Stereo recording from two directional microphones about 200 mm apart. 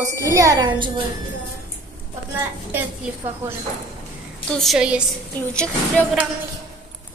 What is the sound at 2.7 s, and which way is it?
Speech, 10° right (ahead or behind).